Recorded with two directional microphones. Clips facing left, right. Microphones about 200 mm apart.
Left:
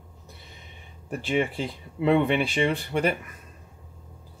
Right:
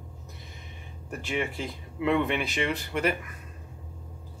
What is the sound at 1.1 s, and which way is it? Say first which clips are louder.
Speech: left 5 dB; 30° left (ahead or behind).